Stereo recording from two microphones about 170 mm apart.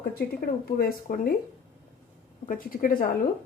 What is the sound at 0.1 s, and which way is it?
Speech, 65° left (ahead or behind).